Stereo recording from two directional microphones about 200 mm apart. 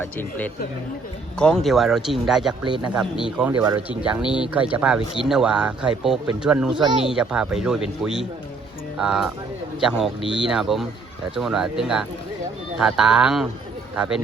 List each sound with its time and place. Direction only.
0.0 s speech: 10° left (ahead or behind)
3.5 s speech: 20° right (ahead or behind)
3.8 s speech: 5° right (ahead or behind)
10.2 s speech: 25° left (ahead or behind)
10.4 s speech: centre (ahead or behind)